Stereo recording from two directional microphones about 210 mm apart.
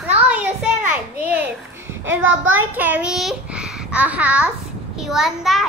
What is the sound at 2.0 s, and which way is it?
Speech, 65° right (ahead or behind).